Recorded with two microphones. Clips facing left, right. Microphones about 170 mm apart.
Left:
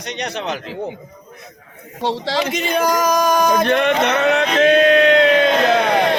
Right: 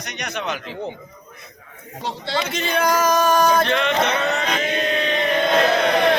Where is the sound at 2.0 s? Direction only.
90° left.